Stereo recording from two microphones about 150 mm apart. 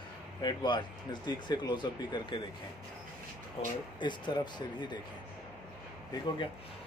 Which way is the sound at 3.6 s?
40° left (ahead or behind).